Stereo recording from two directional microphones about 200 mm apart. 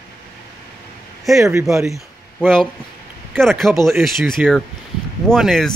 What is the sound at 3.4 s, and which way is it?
A man's voice, centre (ahead or behind).